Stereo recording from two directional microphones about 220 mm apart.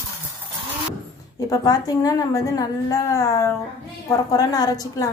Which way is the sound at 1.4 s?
15° left (ahead or behind).